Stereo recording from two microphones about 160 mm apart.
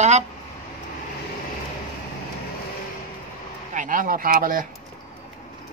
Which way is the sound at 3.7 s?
55° right (ahead or behind).